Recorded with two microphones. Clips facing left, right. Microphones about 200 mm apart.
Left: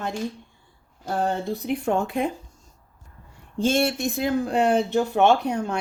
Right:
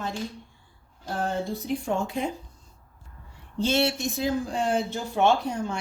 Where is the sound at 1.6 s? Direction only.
65° left (ahead or behind).